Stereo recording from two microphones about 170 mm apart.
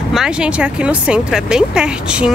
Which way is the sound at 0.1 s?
5° right (ahead or behind).